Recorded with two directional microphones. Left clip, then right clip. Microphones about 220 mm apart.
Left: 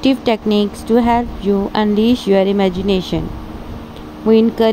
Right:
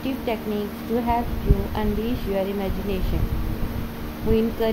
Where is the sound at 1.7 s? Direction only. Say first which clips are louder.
Left 12 dB; 40° left (ahead or behind).